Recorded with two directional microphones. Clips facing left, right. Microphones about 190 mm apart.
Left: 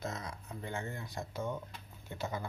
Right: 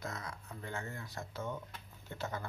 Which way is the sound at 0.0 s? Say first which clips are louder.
Left 3 dB; 20° left (ahead or behind).